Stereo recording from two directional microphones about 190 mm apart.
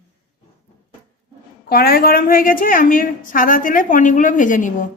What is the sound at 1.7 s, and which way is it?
A woman's voice, 50° left (ahead or behind).